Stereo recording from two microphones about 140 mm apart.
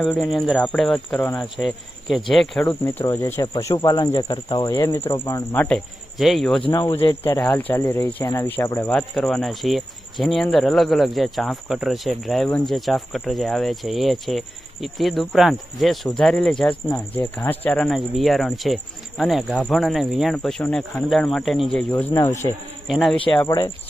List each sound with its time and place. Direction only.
0.0 s speech: centre (ahead or behind)
2.8 s speech: 20° left (ahead or behind)
5.6 s speech: 5° left (ahead or behind)
6.7 s speech: 20° left (ahead or behind)
7.4 s speech: 10° left (ahead or behind)
8.9 s speech: 5° left (ahead or behind)
17.4 s speech: 15° left (ahead or behind)
21.9 s speech: 20° left (ahead or behind)
22.9 s speech: centre (ahead or behind)
23.5 s speech: 30° left (ahead or behind)